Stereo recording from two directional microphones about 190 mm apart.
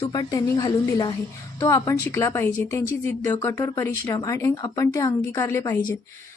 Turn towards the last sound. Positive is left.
turn(degrees=15)  # may be behind; listen again after turning